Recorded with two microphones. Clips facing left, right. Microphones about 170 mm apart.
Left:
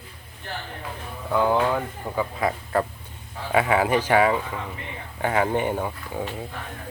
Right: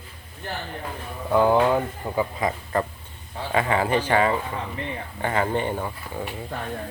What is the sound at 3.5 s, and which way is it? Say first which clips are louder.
Speech: left 2 dB; 10° left (ahead or behind).